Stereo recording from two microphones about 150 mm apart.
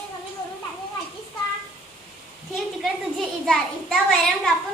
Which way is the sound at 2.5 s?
Centre (ahead or behind).